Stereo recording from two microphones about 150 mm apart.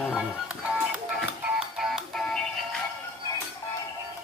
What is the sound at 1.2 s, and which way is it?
Music, 5° right (ahead or behind).